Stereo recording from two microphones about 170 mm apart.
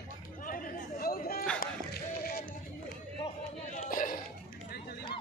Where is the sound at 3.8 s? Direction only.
55° left (ahead or behind).